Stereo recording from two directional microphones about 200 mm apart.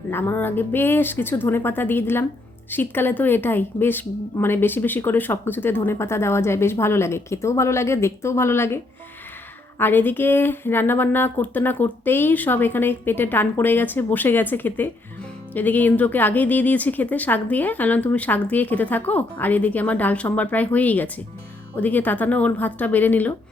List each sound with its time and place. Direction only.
0.1 s speech: 10° left (ahead or behind)